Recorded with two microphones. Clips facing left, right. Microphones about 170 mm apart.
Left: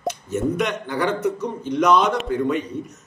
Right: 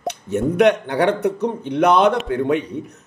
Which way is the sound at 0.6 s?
65° right (ahead or behind).